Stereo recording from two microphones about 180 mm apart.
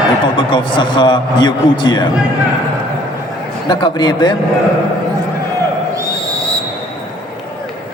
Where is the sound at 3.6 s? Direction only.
25° left (ahead or behind).